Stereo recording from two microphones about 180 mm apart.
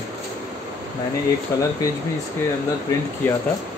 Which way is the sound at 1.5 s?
15° left (ahead or behind).